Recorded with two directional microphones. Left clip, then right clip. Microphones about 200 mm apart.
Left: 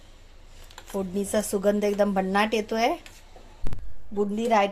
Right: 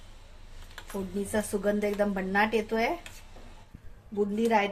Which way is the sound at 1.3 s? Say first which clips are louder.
Left 5 dB; 45° left (ahead or behind).